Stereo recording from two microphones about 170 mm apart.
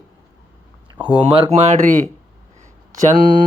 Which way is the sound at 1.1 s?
35° right (ahead or behind).